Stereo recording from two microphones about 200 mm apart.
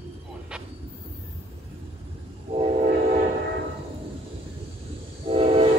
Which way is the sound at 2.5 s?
30° right (ahead or behind).